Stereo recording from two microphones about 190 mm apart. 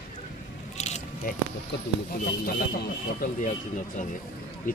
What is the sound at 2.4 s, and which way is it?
Speech, 50° left (ahead or behind).